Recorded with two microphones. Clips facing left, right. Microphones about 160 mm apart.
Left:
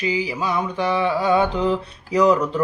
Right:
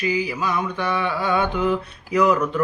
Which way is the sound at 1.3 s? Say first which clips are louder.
Even; 30° left (ahead or behind).